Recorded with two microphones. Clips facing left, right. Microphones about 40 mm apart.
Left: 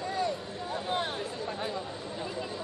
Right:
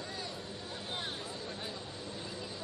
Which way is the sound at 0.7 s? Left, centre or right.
Centre.